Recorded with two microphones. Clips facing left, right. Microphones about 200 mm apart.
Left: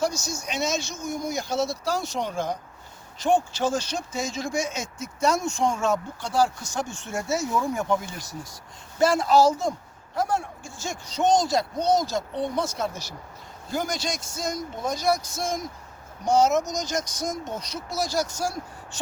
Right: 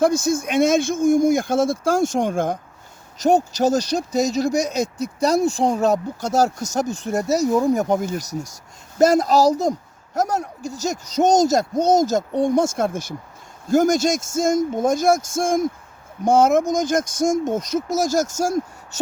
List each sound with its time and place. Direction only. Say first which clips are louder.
0.0 s speech: right 10 dB; 55° right (ahead or behind)
3.2 s speech: right 5 dB; 40° right (ahead or behind)